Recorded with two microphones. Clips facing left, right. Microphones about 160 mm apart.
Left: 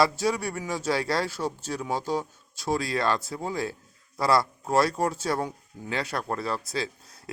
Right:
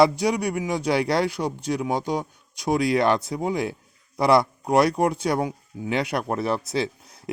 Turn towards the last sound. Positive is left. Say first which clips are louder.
# right 5 dB
turn(degrees=-25)  # may be behind; listen again after turning